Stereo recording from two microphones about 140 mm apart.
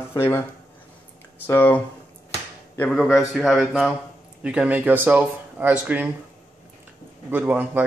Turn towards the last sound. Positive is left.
turn(degrees=-15)  # may be behind; listen again after turning